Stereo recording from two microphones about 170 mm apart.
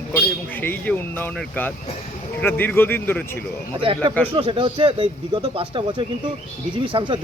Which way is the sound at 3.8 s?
30° right (ahead or behind).